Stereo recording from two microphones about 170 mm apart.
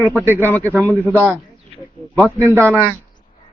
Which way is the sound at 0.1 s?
10° right (ahead or behind).